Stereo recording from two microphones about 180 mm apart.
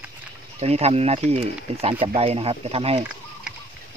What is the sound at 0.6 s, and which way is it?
Speech, 35° right (ahead or behind).